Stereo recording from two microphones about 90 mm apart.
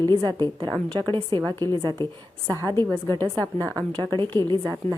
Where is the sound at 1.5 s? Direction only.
50° right (ahead or behind).